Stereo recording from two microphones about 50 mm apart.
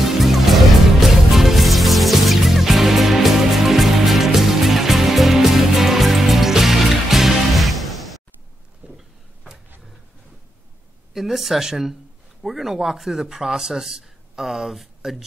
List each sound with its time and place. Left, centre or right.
0.0 s music: centre
8.8 s a sound: right
11.1 s speech: centre